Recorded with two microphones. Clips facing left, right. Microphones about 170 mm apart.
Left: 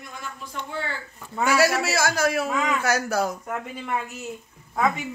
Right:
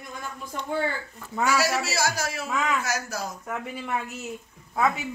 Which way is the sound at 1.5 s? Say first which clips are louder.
Left 4 dB; 55° left (ahead or behind).